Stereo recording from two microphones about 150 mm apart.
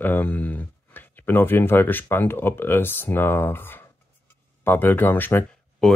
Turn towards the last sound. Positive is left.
turn(degrees=10)  # may be behind; listen again after turning